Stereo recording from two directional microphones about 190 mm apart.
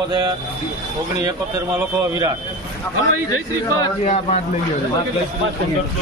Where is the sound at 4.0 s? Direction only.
35° left (ahead or behind).